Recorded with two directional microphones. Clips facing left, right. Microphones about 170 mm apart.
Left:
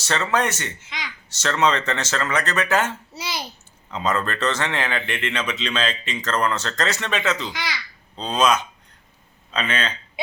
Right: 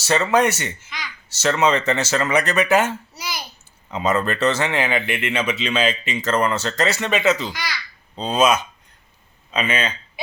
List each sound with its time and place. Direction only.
0.0 s a man's voice: 10° right (ahead or behind)
0.8 s babbling: 20° left (ahead or behind)
1.3 s a man's voice: 5° right (ahead or behind)
3.2 s a sound: 25° left (ahead or behind)
3.9 s a man's voice: 10° right (ahead or behind)
7.5 s a child's voice: 20° left (ahead or behind)
8.1 s a man's voice: 10° right (ahead or behind)